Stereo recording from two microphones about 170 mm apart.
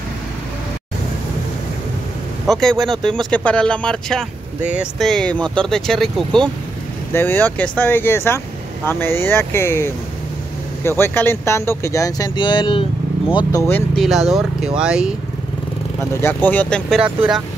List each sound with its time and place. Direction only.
2.4 s speech: centre (ahead or behind); by 13.6 s 25° left (ahead or behind)
13.7 s speech: 10° left (ahead or behind)
14.0 s speech: centre (ahead or behind)
16.2 s speech: 10° left (ahead or behind)
17.0 s speech: 5° right (ahead or behind)